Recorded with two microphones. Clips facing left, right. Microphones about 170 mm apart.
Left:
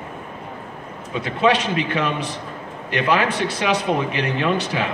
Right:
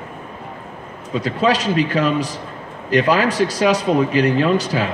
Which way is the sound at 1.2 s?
35° right (ahead or behind).